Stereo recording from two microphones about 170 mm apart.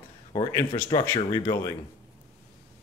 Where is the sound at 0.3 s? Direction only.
20° left (ahead or behind).